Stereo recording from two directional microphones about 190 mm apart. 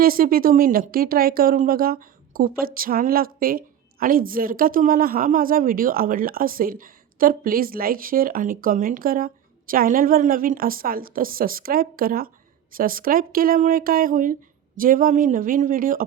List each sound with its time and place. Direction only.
0.0 s speech: 50° right (ahead or behind)